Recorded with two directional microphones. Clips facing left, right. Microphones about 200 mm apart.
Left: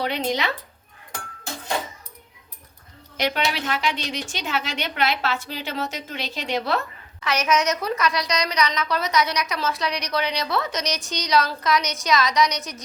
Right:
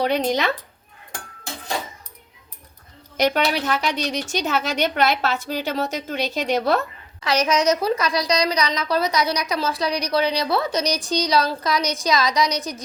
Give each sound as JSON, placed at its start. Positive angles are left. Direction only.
{"t": 0.0, "sound": "speech", "side_deg": -45}
{"t": 3.2, "sound": "a woman's voice", "side_deg": -45}